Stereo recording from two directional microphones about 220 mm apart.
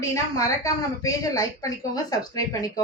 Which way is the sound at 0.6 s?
15° left (ahead or behind).